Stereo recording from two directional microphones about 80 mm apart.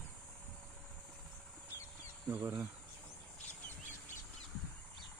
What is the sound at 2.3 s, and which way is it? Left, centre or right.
Speech, right.